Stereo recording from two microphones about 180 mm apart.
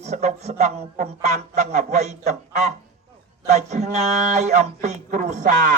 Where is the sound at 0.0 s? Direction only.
40° right (ahead or behind).